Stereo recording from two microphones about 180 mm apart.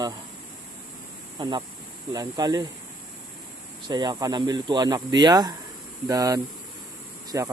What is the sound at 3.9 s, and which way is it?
Speech, 25° right (ahead or behind).